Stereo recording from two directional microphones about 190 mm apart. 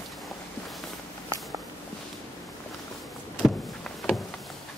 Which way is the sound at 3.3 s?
Centre (ahead or behind).